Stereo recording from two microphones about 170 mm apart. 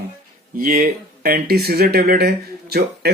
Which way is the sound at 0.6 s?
60° right (ahead or behind).